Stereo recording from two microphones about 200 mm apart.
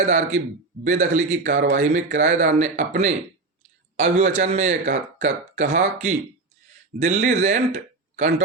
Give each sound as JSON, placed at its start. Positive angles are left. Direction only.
{"t": 0.0, "sound": "speech", "side_deg": -35}
{"t": 4.2, "sound": "a man's voice", "side_deg": -35}